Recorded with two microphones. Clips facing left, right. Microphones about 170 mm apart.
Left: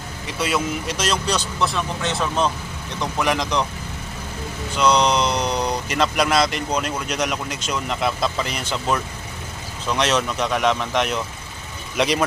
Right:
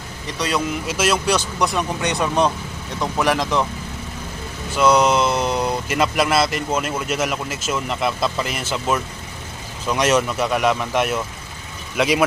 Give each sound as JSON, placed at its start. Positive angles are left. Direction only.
{"t": 0.3, "sound": "speech", "side_deg": 5}
{"t": 4.8, "sound": "speech", "side_deg": -5}